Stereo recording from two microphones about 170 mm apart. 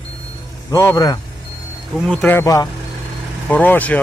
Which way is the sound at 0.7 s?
20° left (ahead or behind).